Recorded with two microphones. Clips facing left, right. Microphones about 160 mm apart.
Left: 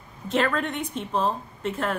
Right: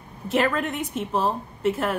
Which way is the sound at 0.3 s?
5° right (ahead or behind).